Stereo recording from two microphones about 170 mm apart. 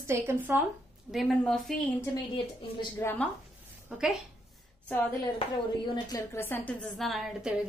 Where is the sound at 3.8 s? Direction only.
5° right (ahead or behind).